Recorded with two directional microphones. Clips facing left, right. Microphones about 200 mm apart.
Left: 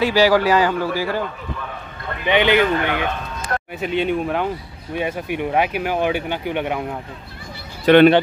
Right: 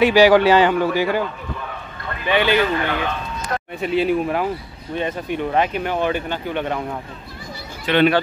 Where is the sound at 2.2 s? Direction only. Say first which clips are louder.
Left 2 dB; 20° left (ahead or behind).